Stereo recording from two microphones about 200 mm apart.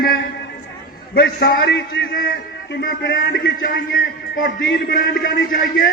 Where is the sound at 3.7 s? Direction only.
45° left (ahead or behind).